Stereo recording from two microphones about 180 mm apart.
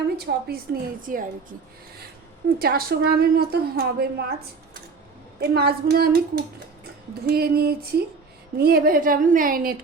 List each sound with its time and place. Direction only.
0.3 s a woman's voice: 60° right (ahead or behind)
2.6 s a woman's voice: 60° right (ahead or behind)